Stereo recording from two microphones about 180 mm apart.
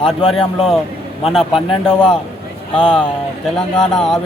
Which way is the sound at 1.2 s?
Centre (ahead or behind).